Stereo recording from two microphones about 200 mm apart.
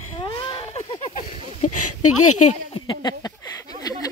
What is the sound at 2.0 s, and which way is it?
Speech, 90° left.